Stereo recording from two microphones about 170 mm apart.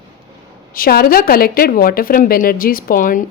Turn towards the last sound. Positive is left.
turn(degrees=50)  # may be behind; listen again after turning